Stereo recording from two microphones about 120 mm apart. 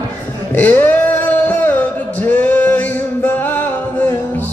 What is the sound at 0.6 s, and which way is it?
Music, 15° left (ahead or behind).